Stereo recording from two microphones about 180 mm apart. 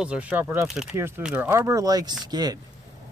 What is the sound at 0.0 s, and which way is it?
Speech, 5° right (ahead or behind).